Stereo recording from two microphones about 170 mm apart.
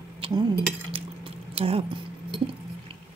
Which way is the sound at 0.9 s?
35° right (ahead or behind).